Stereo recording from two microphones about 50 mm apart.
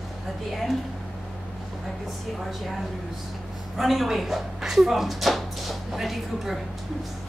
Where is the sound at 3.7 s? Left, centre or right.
Centre.